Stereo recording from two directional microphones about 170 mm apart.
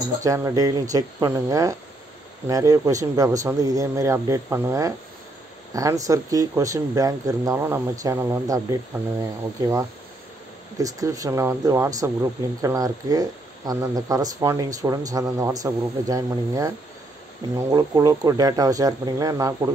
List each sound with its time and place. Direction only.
0.2 s speech: 20° right (ahead or behind)
10.8 s speech: 20° right (ahead or behind)